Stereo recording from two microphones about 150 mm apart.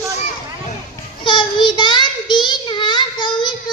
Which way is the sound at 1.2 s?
30° left (ahead or behind).